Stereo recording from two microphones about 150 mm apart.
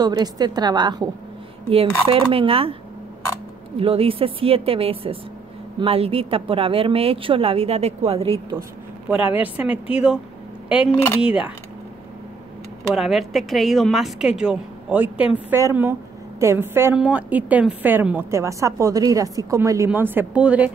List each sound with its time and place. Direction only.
0.0 s a woman's voice: 25° right (ahead or behind)
2.0 s speech: 35° right (ahead or behind)
3.7 s speech: 40° right (ahead or behind)
9.1 s a woman's voice: 10° right (ahead or behind)
11.1 s a woman's voice: 10° right (ahead or behind)
12.9 s a woman's voice: centre (ahead or behind)